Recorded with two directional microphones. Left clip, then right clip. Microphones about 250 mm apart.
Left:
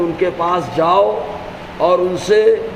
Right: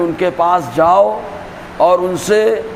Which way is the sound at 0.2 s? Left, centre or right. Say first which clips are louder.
Right 6 dB; right.